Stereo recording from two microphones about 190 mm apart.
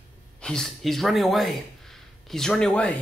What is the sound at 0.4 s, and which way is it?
Speech, 5° left (ahead or behind).